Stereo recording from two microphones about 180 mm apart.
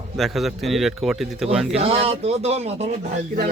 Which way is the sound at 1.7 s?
35° right (ahead or behind).